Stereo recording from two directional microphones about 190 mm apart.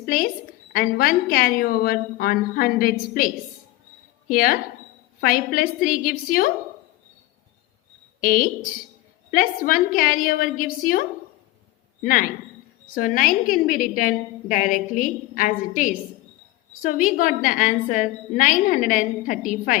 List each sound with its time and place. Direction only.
0.0 s a woman's voice: 50° left (ahead or behind)
8.2 s a woman's voice: 50° left (ahead or behind)
12.0 s a woman's voice: 45° left (ahead or behind)